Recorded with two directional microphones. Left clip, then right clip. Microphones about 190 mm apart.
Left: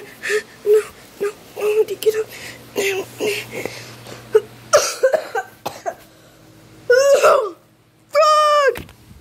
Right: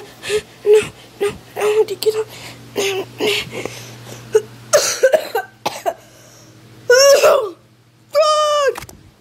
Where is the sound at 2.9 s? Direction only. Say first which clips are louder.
Right 2 dB; 10° right (ahead or behind).